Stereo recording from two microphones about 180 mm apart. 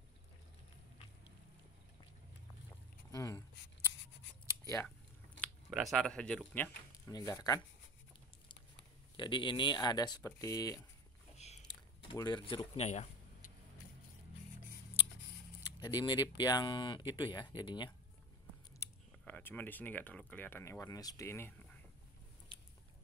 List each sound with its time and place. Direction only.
3.1 s a sound: 20° left (ahead or behind)
5.4 s speech: centre (ahead or behind)
7.1 s speech: 20° left (ahead or behind)
9.1 s speech: 25° left (ahead or behind)
11.3 s a sound: 40° left (ahead or behind)
12.1 s speech: 25° left (ahead or behind)
15.6 s speech: 20° left (ahead or behind)
18.8 s speech: 10° left (ahead or behind)
22.5 s biting: 25° left (ahead or behind)